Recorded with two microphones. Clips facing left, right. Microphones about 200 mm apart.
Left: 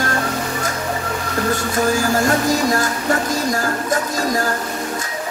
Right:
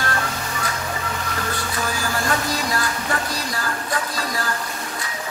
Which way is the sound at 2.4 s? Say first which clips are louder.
Left 7 dB; 45° left (ahead or behind).